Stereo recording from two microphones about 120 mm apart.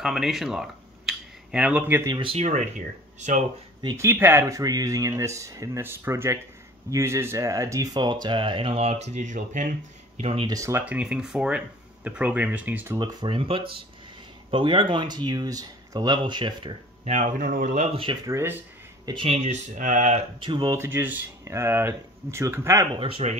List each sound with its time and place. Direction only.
0.0 s speech: 5° right (ahead or behind)
2.0 s speech: 45° right (ahead or behind)
2.3 s speech: 70° right (ahead or behind)
3.9 s speech: 20° right (ahead or behind); by 10.3 s 85° right
10.4 s speech: 30° right (ahead or behind)
10.9 s speech: 10° right (ahead or behind)
13.0 s speech: 45° right (ahead or behind)
17.0 s speech: 90° right
18.2 s speech: 20° right (ahead or behind)
19.2 s speech: 65° right (ahead or behind)
20.3 s speech: 40° right (ahead or behind)
20.7 s speech: 20° right (ahead or behind)
22.9 s speech: 50° right (ahead or behind)